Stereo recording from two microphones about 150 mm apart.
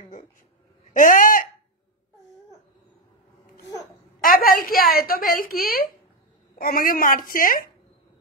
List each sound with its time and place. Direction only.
0.9 s a woman's voice: 65° left (ahead or behind)
4.2 s a woman's voice: 70° left (ahead or behind)